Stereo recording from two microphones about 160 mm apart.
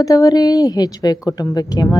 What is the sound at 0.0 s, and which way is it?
A woman's voice, 20° left (ahead or behind).